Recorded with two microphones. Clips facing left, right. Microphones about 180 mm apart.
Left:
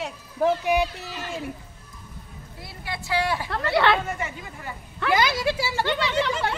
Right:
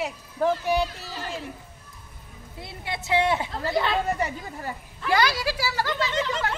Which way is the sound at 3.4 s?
75° left (ahead or behind).